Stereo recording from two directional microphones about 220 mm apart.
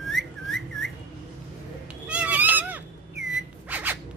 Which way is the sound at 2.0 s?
5° right (ahead or behind).